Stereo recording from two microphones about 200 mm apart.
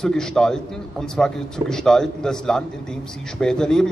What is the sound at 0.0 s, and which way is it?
A man's voice, 5° left (ahead or behind).